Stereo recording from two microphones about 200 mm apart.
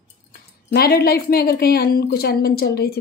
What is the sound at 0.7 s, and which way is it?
A woman's voice, 50° left (ahead or behind).